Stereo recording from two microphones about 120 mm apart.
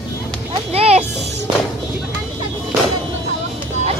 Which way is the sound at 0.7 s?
55° right (ahead or behind).